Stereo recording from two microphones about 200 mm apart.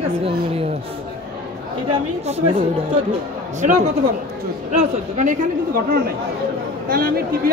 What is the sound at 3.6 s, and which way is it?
Speech, 35° right (ahead or behind).